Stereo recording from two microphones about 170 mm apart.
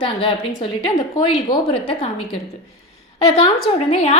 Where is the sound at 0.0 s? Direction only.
30° left (ahead or behind).